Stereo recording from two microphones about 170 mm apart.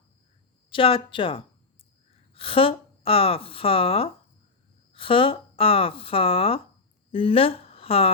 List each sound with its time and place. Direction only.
0.7 s a woman's voice: 30° left (ahead or behind)